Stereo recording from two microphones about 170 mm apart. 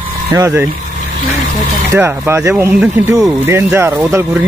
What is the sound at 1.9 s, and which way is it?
A man's voice, 15° right (ahead or behind).